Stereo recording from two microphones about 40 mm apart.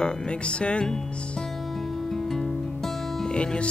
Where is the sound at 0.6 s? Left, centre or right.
Left.